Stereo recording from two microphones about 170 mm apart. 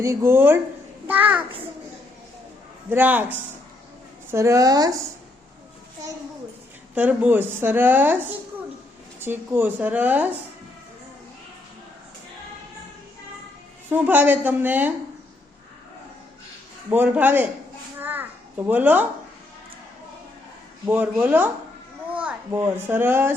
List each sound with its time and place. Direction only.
0.0 s speech: 15° right (ahead or behind)
2.9 s a woman's voice: 10° right (ahead or behind)
6.9 s speech: 10° right (ahead or behind)
13.9 s speech: 10° right (ahead or behind)
16.9 s speech: 10° right (ahead or behind)
18.0 s a sound: 10° right (ahead or behind)
20.8 s a child's voice: 10° right (ahead or behind)